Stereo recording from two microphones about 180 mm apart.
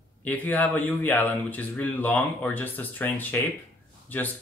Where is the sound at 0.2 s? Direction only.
10° left (ahead or behind).